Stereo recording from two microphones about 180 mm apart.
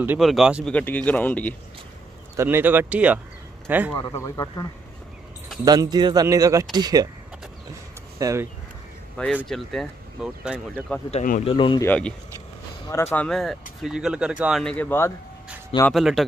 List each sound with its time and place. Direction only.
0.2 s speech: centre (ahead or behind)
0.7 s speech: 5° left (ahead or behind)
2.3 s speech: 10° right (ahead or behind)
4.0 s speech: 15° left (ahead or behind)
5.7 s speech: 20° right (ahead or behind)
8.2 s speech: 15° right (ahead or behind)
9.1 s speech: 10° left (ahead or behind)
11.4 s speech: 30° left (ahead or behind)
11.8 s speech: 10° left (ahead or behind)
15.9 s speech: centre (ahead or behind)